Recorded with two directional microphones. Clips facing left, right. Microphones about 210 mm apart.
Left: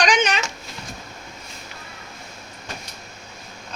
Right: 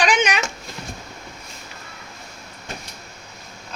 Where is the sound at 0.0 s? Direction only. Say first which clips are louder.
Even; 10° right (ahead or behind).